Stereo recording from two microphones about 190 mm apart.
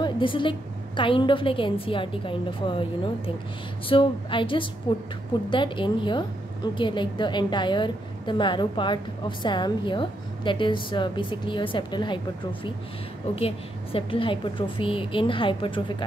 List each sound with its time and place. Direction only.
0.0 s a woman's voice: 25° left (ahead or behind)
3.9 s a woman's voice: 25° left (ahead or behind)
13.4 s a woman's voice: 30° left (ahead or behind)